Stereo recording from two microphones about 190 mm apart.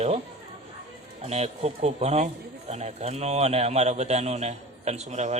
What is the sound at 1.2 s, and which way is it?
A man's voice, 35° right (ahead or behind).